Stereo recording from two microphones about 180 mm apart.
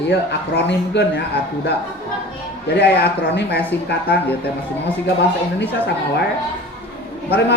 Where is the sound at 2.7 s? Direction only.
65° left (ahead or behind).